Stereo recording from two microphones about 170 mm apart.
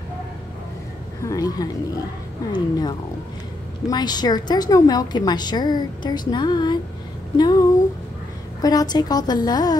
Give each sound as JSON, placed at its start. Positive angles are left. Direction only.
{"t": 1.2, "sound": "a woman's voice", "side_deg": 20}
{"t": 8.6, "sound": "a woman's voice", "side_deg": 20}